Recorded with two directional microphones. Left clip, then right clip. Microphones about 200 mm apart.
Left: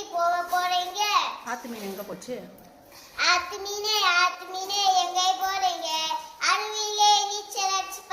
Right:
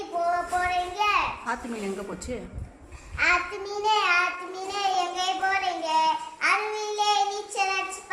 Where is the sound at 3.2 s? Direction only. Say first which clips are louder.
Even; 15° right (ahead or behind).